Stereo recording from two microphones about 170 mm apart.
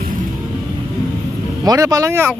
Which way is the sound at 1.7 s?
20° right (ahead or behind).